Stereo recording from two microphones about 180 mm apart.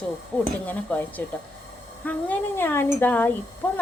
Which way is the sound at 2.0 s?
10° left (ahead or behind).